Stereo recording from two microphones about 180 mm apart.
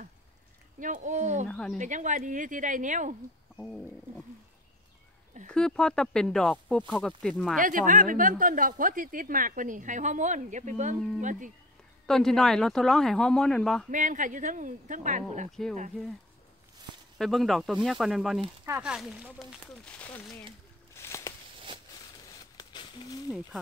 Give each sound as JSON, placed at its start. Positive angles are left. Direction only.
{"t": 0.7, "sound": "a woman's voice", "side_deg": -45}
{"t": 1.5, "sound": "speech", "side_deg": 5}
{"t": 1.8, "sound": "a woman's voice", "side_deg": -45}
{"t": 5.5, "sound": "speech", "side_deg": 5}
{"t": 7.5, "sound": "a woman's voice", "side_deg": -50}
{"t": 12.1, "sound": "speech", "side_deg": 0}
{"t": 13.8, "sound": "a woman's voice", "side_deg": -45}
{"t": 17.2, "sound": "speech", "side_deg": 0}
{"t": 19.8, "sound": "speech", "side_deg": 5}
{"t": 20.9, "sound": "a sound", "side_deg": 15}
{"t": 22.6, "sound": "a sound", "side_deg": 25}